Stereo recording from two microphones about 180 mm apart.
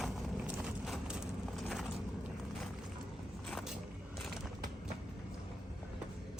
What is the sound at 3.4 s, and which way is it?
Vehicle, 5° left (ahead or behind).